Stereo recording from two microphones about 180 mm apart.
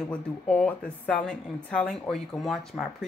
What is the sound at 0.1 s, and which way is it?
Speech, 5° left (ahead or behind).